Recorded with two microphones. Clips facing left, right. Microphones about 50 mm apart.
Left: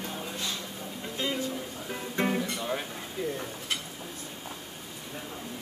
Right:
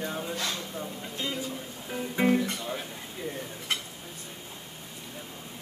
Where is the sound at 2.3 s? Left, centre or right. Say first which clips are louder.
Right 3 dB; centre.